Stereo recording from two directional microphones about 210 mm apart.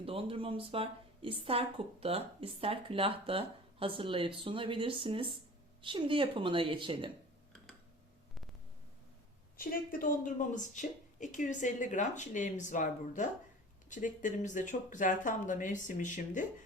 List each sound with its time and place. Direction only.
0.0 s a woman's voice: 25° right (ahead or behind)
9.6 s speech: 40° left (ahead or behind)